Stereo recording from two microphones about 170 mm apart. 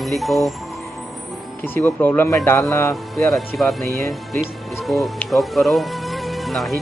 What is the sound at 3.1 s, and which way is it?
Speech, centre (ahead or behind).